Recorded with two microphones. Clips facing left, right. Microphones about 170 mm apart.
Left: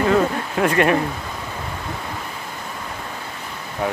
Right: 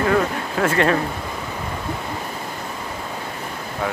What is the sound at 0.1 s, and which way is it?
Speech, 20° left (ahead or behind).